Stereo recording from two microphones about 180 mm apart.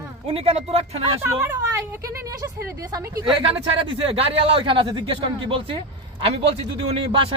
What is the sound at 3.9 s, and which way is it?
A man's voice, 30° right (ahead or behind).